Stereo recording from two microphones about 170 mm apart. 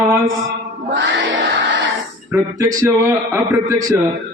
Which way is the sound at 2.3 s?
20° right (ahead or behind).